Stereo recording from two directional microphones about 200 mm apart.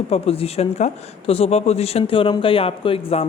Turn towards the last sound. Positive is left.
turn(degrees=30)  # may be behind; listen again after turning